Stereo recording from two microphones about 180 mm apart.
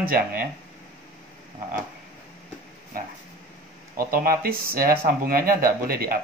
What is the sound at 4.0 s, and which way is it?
Speech, 55° right (ahead or behind).